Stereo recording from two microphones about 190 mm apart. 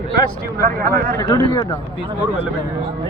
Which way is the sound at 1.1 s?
15° left (ahead or behind).